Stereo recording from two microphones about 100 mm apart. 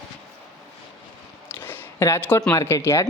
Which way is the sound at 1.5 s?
20° left (ahead or behind).